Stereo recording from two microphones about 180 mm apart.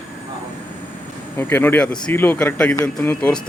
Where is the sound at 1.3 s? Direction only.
10° left (ahead or behind).